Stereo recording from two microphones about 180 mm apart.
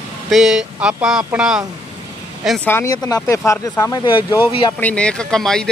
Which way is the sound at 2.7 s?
15° left (ahead or behind).